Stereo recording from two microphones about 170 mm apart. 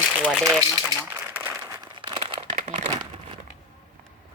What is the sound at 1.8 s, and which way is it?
Crumpling, 30° right (ahead or behind).